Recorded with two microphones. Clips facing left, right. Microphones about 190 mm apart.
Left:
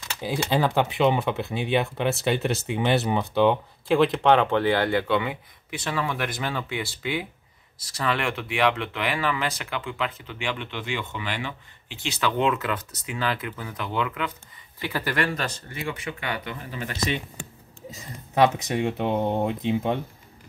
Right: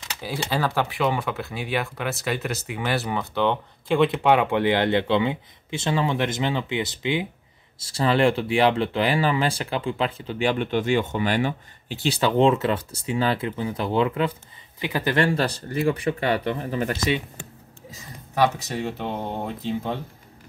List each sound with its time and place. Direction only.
0.2 s speech: 20° left (ahead or behind)
3.9 s speech: centre (ahead or behind); by 14.3 s 30° right (ahead or behind)
14.8 s speech: 20° right (ahead or behind); by 16.9 s 40° right (ahead or behind)
18.8 s speech: 15° left (ahead or behind)